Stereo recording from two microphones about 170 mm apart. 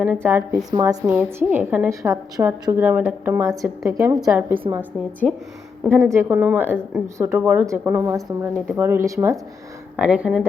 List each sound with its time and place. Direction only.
0.0 s a woman's voice: 15° right (ahead or behind)
10.0 s speech: 5° right (ahead or behind)